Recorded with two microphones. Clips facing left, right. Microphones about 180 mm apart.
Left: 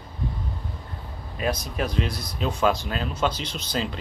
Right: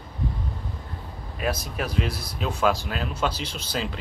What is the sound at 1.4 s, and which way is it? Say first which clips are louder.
Speech: left 1 dB; 5° right (ahead or behind).